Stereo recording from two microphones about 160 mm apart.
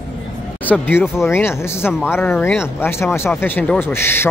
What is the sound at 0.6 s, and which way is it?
Speech, 10° left (ahead or behind).